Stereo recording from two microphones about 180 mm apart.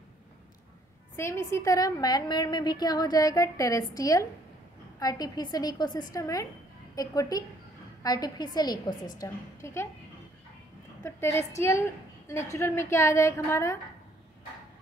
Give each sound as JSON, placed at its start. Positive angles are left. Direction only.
{"t": 1.1, "sound": "a woman's voice", "side_deg": 15}
{"t": 11.1, "sound": "a woman's voice", "side_deg": 15}